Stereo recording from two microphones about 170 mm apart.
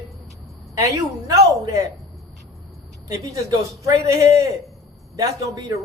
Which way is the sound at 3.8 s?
20° right (ahead or behind).